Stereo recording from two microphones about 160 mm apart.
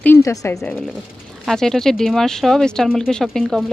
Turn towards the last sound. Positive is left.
turn(degrees=0)  # may be behind; listen again after turning